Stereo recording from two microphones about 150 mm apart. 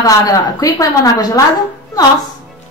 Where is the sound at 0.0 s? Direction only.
25° left (ahead or behind).